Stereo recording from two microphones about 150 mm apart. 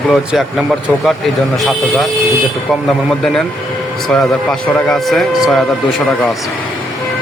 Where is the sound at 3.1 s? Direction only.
Centre (ahead or behind).